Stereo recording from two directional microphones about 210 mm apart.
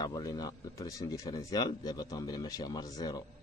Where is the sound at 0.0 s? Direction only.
20° left (ahead or behind).